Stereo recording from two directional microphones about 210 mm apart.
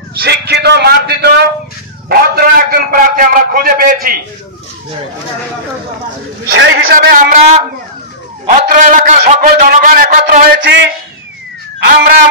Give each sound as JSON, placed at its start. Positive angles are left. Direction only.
{"t": 0.1, "sound": "a man's voice", "side_deg": -50}
{"t": 6.4, "sound": "a man's voice", "side_deg": -50}